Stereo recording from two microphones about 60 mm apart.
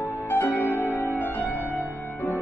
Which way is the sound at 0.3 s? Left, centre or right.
Left.